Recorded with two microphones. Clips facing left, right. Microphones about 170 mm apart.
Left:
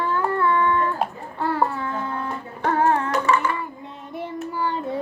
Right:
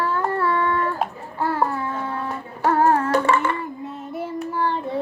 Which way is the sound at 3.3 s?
50° right (ahead or behind).